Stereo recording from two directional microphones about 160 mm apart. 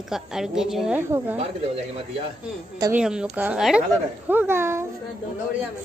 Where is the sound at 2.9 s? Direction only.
5° right (ahead or behind).